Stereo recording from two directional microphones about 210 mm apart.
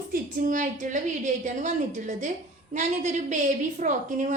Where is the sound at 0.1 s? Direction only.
40° right (ahead or behind).